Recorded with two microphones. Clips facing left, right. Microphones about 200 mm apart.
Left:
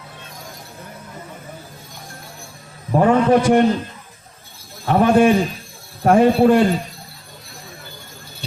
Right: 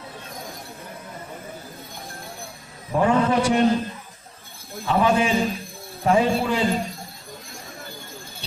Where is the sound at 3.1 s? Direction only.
55° left (ahead or behind).